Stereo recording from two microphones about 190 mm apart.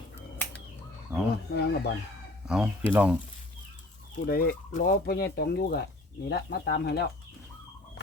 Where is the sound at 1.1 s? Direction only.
15° right (ahead or behind).